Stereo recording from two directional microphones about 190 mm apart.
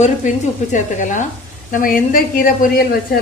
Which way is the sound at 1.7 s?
45° left (ahead or behind).